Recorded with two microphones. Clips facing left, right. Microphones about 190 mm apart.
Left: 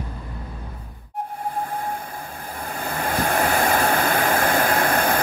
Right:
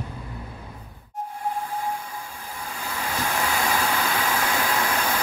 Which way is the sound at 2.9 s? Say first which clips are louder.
Left 5 dB; 55° left (ahead or behind).